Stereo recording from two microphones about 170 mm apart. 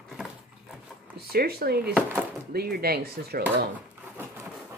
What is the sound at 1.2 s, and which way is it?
Speech, 65° right (ahead or behind).